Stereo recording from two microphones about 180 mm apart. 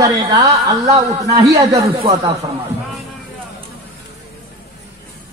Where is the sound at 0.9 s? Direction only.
20° right (ahead or behind).